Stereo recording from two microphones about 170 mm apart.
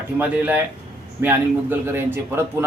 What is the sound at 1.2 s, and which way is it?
A man's voice, 10° right (ahead or behind).